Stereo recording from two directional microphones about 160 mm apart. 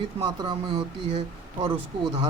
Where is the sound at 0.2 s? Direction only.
25° right (ahead or behind).